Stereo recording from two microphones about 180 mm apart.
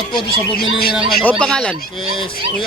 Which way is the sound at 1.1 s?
5° left (ahead or behind).